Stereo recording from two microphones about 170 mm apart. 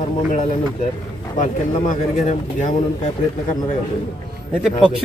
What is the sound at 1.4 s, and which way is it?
Speech, 45° left (ahead or behind).